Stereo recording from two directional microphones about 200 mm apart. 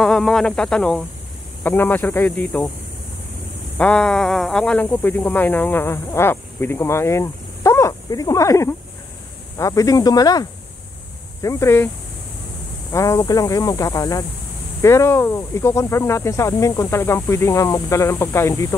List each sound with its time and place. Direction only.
0.0 s speech: centre (ahead or behind)
3.7 s speech: 5° left (ahead or behind)
12.9 s speech: 15° left (ahead or behind)